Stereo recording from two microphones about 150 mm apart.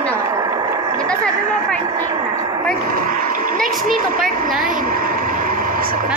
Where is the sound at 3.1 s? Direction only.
70° right (ahead or behind).